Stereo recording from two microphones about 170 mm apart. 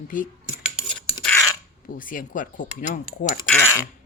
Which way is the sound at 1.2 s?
5° left (ahead or behind).